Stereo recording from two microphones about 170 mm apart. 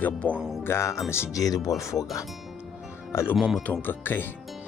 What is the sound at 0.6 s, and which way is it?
Speech, 15° left (ahead or behind).